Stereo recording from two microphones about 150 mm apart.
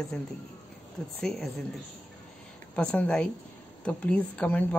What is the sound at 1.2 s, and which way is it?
Speech, 5° left (ahead or behind).